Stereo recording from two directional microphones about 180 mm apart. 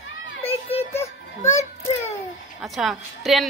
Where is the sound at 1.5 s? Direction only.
40° left (ahead or behind).